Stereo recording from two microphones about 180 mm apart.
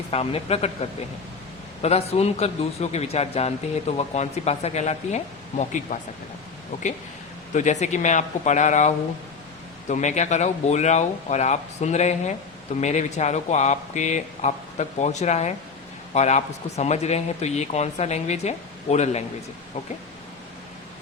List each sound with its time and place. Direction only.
0.1 s speech: 35° left (ahead or behind)
7.5 s speech: 40° left (ahead or behind)
9.9 s speech: 40° left (ahead or behind)